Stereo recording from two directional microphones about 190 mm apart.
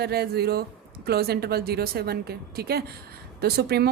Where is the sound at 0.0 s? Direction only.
55° right (ahead or behind).